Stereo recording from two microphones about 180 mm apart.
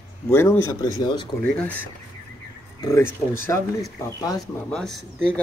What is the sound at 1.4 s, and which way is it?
Speech, 10° left (ahead or behind).